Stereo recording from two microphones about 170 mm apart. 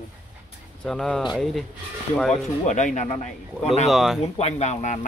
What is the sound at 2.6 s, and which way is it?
Speech, 45° left (ahead or behind).